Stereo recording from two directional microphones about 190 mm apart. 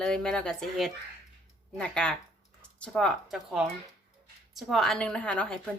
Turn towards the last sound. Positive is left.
turn(degrees=5)  # may be behind; listen again after turning